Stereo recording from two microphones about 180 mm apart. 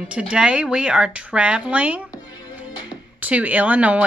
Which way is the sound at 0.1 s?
5° right (ahead or behind).